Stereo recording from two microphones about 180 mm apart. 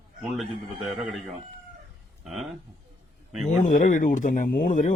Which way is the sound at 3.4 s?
40° left (ahead or behind).